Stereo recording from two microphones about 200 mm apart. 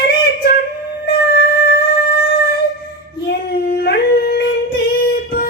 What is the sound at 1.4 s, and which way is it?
Music, 50° left (ahead or behind).